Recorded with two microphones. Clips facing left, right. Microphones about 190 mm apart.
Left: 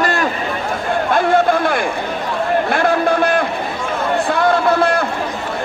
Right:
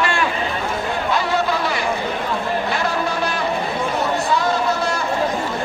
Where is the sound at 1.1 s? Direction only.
55° left (ahead or behind).